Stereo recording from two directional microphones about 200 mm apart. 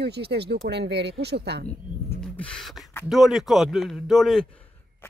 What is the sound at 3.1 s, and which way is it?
Speech, centre (ahead or behind).